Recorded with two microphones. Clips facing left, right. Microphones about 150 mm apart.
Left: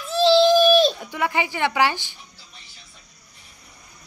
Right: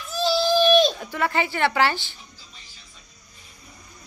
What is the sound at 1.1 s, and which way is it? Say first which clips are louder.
Speech: even; 15° left (ahead or behind).